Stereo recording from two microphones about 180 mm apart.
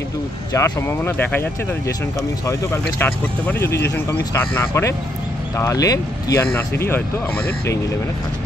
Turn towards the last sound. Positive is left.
turn(degrees=10)  # may be behind; listen again after turning